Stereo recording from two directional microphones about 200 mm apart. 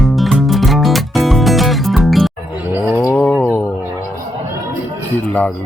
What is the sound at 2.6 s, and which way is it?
Livestock, 10° right (ahead or behind).